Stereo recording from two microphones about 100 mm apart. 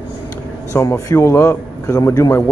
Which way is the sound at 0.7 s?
30° left (ahead or behind).